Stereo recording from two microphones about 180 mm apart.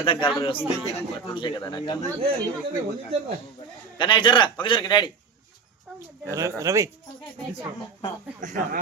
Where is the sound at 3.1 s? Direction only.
35° right (ahead or behind).